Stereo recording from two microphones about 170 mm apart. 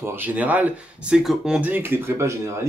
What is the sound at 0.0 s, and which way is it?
Speech, 10° right (ahead or behind).